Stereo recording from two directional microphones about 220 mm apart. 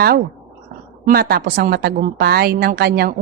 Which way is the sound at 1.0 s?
45° right (ahead or behind).